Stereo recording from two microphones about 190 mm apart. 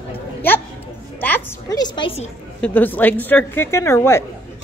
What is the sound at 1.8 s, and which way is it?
Music, 25° left (ahead or behind).